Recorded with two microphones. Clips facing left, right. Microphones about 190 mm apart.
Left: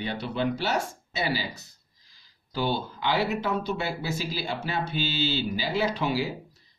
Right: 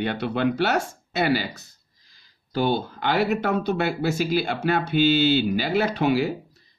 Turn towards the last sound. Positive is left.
turn(degrees=-60)  # may be behind; listen again after turning